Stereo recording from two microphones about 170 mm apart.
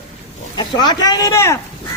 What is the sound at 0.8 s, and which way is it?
Speech, 25° left (ahead or behind).